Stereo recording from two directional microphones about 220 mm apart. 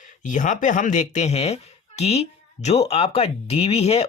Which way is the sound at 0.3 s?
35° left (ahead or behind).